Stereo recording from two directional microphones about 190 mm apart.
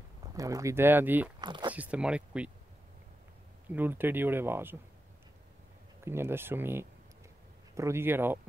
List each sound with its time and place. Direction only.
0.2 s speech: 20° right (ahead or behind)
1.4 s speech: 25° right (ahead or behind)
1.7 s speech: 5° right (ahead or behind)
3.7 s speech: 10° right (ahead or behind)
6.0 s speech: 10° right (ahead or behind)